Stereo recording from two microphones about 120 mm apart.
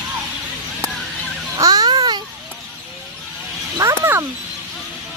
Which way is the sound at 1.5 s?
30° right (ahead or behind).